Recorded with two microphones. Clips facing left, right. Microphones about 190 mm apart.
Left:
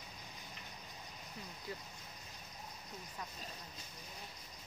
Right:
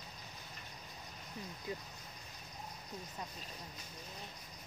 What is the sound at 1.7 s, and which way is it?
Vehicle, 20° right (ahead or behind).